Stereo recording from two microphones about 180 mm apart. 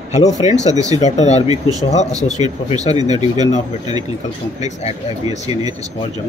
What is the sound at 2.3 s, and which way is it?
Speech, 20° right (ahead or behind).